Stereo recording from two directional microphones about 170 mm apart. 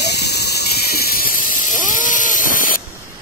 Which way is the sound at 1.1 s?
55° left (ahead or behind).